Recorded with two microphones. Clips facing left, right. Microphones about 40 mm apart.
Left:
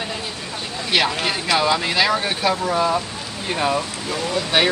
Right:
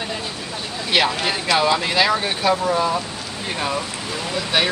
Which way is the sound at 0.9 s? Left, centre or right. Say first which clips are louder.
Right 1 dB; centre.